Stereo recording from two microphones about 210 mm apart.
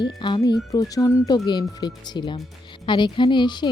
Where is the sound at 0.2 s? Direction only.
20° left (ahead or behind).